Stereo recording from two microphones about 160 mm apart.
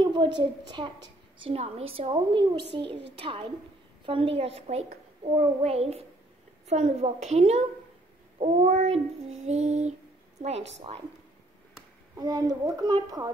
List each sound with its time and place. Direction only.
0.0 s a woman's voice: 30° right (ahead or behind)
6.7 s child singing: 45° right (ahead or behind)
12.2 s a woman's voice: 25° right (ahead or behind)